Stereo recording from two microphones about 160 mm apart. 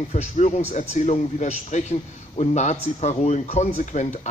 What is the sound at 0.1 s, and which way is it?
A man's voice, 45° left (ahead or behind).